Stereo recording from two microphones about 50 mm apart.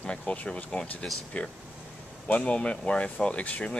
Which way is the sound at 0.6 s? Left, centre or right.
Centre.